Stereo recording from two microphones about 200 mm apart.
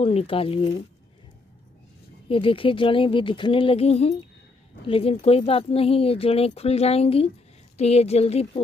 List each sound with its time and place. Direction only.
0.0 s speech: 30° left (ahead or behind)
2.2 s speech: 25° left (ahead or behind)